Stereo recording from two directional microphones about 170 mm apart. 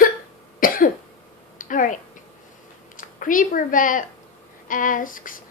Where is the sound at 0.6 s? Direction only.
55° left (ahead or behind).